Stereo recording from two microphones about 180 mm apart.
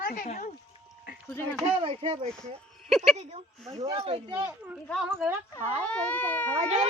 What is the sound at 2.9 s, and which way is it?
Speech, centre (ahead or behind).